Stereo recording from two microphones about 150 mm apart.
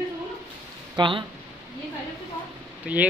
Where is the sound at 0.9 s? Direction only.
35° right (ahead or behind).